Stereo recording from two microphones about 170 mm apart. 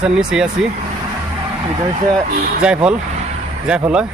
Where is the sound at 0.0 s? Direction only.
5° right (ahead or behind).